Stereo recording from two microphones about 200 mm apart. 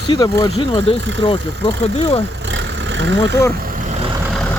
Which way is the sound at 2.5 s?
65° right (ahead or behind).